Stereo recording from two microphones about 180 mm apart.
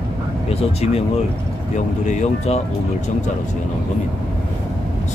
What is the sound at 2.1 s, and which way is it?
Speech, 40° left (ahead or behind).